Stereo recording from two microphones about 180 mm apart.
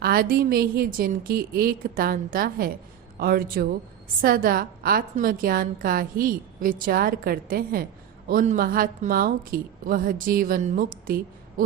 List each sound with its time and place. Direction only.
0.0 s a woman's voice: 55° right (ahead or behind)